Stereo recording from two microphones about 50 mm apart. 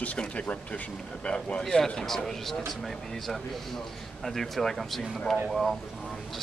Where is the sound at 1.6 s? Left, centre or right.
Centre.